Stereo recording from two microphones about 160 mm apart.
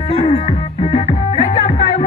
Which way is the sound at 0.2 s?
35° left (ahead or behind).